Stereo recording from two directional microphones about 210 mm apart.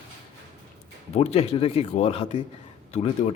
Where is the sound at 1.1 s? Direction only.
30° left (ahead or behind).